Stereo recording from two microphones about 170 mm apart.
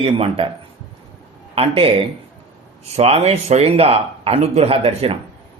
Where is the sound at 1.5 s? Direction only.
35° right (ahead or behind).